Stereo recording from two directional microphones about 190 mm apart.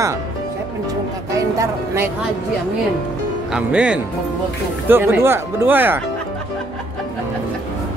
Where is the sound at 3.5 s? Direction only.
5° right (ahead or behind).